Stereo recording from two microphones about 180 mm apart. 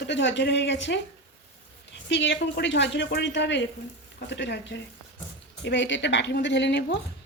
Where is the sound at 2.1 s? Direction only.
85° left.